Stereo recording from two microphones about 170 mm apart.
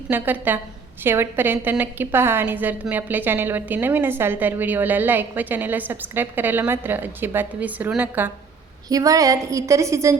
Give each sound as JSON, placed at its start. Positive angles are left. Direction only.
{"t": 0.1, "sound": "a woman's voice", "side_deg": -10}
{"t": 8.9, "sound": "a woman's voice", "side_deg": -20}